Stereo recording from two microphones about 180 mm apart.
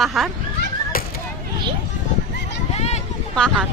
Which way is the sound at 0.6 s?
55° left (ahead or behind).